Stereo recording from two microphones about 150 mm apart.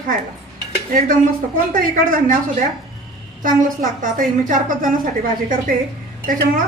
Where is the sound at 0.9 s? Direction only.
60° right (ahead or behind).